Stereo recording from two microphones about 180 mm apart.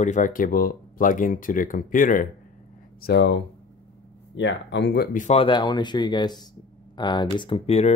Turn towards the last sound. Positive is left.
turn(degrees=35)  # may be behind; listen again after turning